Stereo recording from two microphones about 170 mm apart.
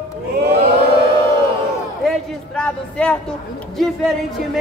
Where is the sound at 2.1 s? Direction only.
5° left (ahead or behind).